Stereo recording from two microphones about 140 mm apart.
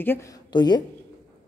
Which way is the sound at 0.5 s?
30° left (ahead or behind).